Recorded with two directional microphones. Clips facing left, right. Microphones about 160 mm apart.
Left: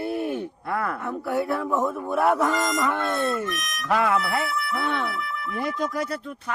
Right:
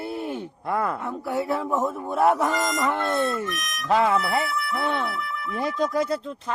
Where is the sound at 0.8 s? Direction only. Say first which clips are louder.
Right 1 dB; 20° right (ahead or behind).